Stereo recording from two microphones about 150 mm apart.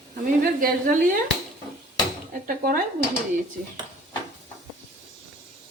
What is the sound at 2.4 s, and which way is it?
Speech, 70° right (ahead or behind).